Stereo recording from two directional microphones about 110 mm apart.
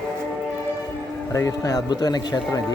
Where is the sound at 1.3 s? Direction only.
30° left (ahead or behind).